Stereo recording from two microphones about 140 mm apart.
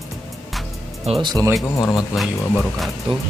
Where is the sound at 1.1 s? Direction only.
45° right (ahead or behind).